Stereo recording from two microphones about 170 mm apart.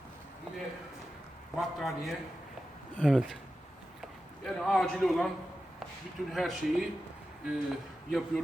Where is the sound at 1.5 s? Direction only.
Centre (ahead or behind).